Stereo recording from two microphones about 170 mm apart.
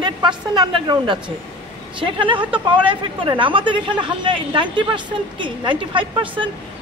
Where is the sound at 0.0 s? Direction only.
25° right (ahead or behind).